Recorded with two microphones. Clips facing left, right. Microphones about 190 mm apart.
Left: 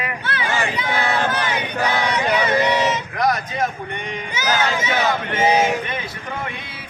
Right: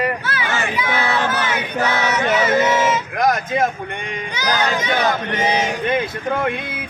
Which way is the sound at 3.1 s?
45° right (ahead or behind).